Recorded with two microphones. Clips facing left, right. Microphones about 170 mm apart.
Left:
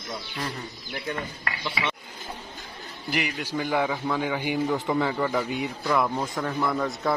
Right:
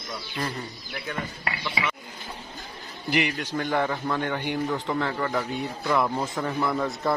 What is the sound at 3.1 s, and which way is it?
A man's voice, 5° left (ahead or behind).